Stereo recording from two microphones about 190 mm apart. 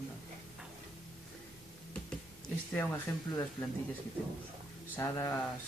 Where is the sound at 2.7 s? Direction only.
10° left (ahead or behind).